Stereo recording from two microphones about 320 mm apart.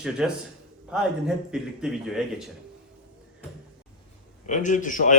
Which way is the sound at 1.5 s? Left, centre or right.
Centre.